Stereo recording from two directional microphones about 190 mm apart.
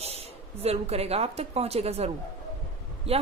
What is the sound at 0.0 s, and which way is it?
A woman's voice, 35° right (ahead or behind).